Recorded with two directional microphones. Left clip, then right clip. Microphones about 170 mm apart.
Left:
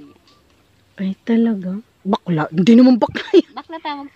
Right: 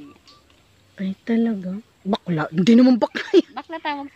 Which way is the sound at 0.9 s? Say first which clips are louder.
Left 4 dB; 30° left (ahead or behind).